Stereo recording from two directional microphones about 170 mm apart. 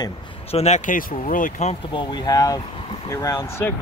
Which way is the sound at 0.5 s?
40° left (ahead or behind).